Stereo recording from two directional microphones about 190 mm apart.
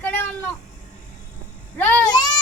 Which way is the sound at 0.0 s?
10° left (ahead or behind).